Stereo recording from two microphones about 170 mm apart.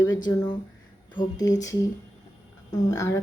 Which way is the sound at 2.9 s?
20° left (ahead or behind).